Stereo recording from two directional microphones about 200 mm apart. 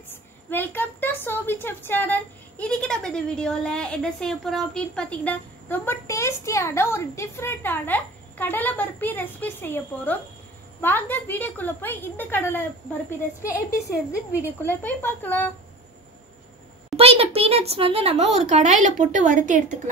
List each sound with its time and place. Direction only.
0.1 s a woman's voice: 10° left (ahead or behind)
14.7 s a woman's voice: 10° left (ahead or behind)
16.9 s a child's voice: 30° right (ahead or behind)